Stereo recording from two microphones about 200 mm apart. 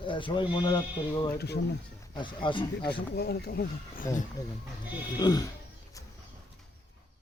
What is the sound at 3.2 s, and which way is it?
Speech, 55° left (ahead or behind).